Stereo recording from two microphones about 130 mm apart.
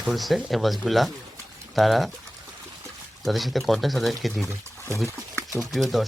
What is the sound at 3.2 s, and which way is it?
Speech, centre (ahead or behind).